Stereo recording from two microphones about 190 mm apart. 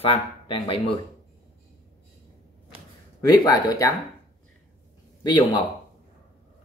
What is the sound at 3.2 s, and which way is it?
Speech, 20° left (ahead or behind).